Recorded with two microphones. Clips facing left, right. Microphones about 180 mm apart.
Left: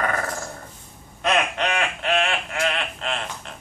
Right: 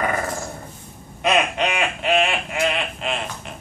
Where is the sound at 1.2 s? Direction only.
15° right (ahead or behind).